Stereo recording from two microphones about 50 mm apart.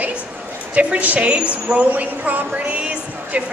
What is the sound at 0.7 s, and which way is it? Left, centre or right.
A woman's voice, right.